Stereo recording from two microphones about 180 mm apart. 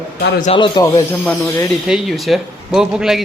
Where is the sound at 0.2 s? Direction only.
65° left (ahead or behind).